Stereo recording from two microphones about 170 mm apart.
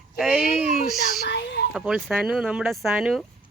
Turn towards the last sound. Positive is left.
turn(degrees=0)  # may be behind; listen again after turning